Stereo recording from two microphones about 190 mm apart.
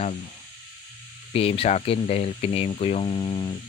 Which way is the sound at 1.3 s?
30° left (ahead or behind).